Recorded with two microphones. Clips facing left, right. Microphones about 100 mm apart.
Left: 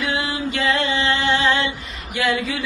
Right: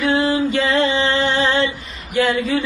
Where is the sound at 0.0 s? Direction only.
35° right (ahead or behind).